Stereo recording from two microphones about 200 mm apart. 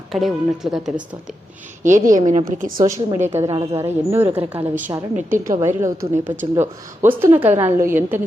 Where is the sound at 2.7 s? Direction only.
20° right (ahead or behind).